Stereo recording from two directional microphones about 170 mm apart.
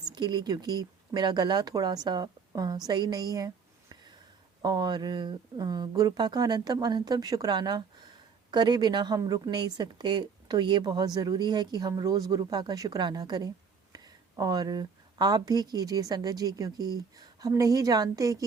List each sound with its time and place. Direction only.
0.1 s a woman's voice: 25° right (ahead or behind)